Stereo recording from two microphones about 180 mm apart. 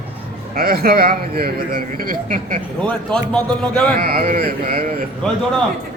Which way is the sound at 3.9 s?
55° right (ahead or behind).